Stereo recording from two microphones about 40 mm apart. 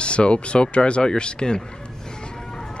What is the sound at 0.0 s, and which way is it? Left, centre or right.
Speech, left.